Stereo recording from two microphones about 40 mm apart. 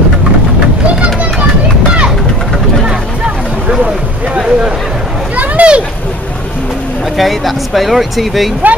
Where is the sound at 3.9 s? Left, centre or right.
Right.